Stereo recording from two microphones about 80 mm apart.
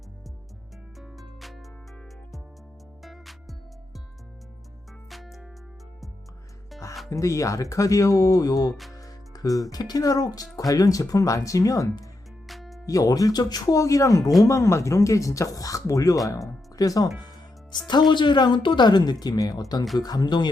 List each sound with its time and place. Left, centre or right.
0.9 s music: centre
3.0 s music: centre
5.0 s music: centre
7.1 s speech: left
12.5 s music: centre
12.8 s speech: left
16.5 s music: left
17.2 s music: left
18.1 s speech: left